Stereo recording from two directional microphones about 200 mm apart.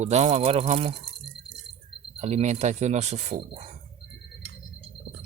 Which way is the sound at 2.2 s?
35° right (ahead or behind).